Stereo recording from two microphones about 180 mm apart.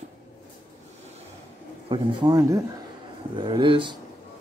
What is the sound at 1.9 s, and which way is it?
Speech, 25° right (ahead or behind).